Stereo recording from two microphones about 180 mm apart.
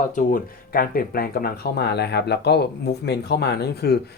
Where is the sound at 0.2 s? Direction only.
50° left (ahead or behind).